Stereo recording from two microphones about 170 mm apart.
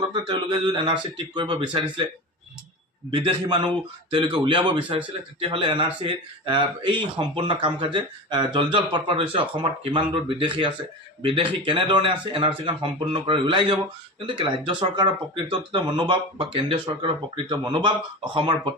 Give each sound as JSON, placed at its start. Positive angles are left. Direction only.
{"t": 0.1, "sound": "speech", "side_deg": -25}
{"t": 3.1, "sound": "speech", "side_deg": -30}